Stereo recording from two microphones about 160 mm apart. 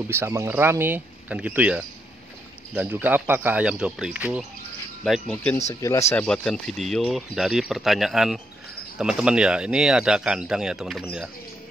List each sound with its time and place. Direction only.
0.1 s speech: 15° right (ahead or behind)
5.0 s speech: 5° left (ahead or behind)
5.8 s speech: 20° left (ahead or behind)
6.2 s speech: 5° left (ahead or behind)